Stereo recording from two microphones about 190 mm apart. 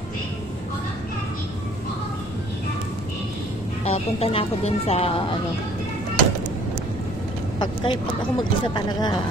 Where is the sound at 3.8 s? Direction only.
30° left (ahead or behind).